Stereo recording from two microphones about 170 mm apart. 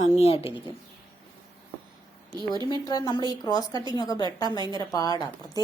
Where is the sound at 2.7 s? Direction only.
25° left (ahead or behind).